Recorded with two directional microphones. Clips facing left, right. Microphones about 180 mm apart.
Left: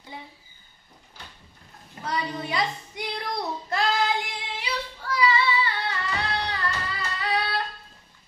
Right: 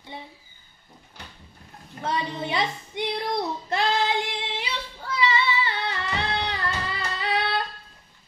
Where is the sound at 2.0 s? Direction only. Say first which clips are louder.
Right 2 dB; 25° right (ahead or behind).